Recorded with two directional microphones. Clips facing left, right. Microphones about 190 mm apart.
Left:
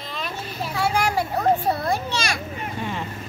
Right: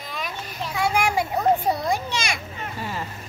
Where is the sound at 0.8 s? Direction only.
15° right (ahead or behind).